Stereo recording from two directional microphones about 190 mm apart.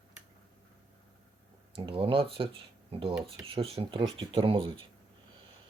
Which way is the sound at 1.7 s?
30° right (ahead or behind).